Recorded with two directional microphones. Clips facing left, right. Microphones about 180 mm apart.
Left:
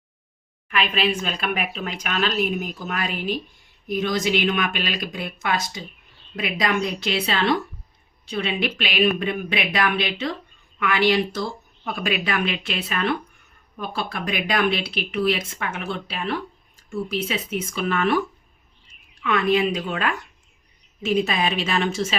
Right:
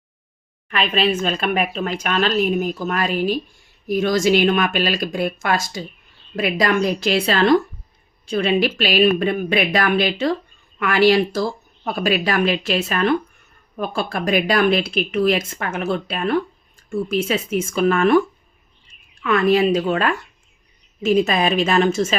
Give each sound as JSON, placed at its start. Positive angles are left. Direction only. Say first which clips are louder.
{"t": 0.7, "sound": "a woman's voice", "louder": "right 3 dB", "side_deg": -35}
{"t": 19.2, "sound": "speech", "louder": "right 4 dB", "side_deg": -45}